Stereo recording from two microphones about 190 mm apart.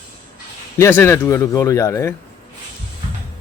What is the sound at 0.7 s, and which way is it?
A man's voice, 15° left (ahead or behind).